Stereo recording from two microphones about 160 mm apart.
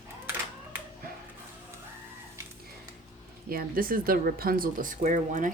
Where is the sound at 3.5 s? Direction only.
65° right (ahead or behind).